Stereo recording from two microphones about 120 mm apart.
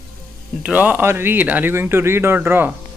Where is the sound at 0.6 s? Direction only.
15° right (ahead or behind).